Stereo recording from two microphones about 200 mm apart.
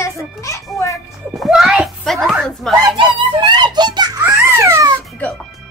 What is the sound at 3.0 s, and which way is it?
Giggle, 25° right (ahead or behind).